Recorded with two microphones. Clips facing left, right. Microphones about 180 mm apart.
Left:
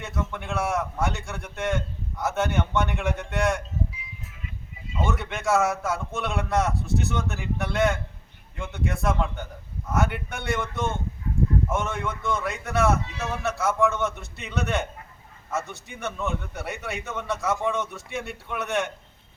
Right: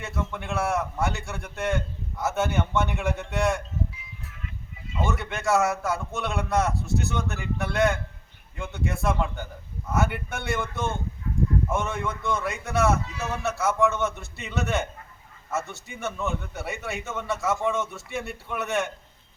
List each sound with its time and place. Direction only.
0.0 s a man's voice: centre (ahead or behind)
4.9 s a man's voice: centre (ahead or behind)
11.4 s a sound: 15° right (ahead or behind)
11.7 s a man's voice: centre (ahead or behind)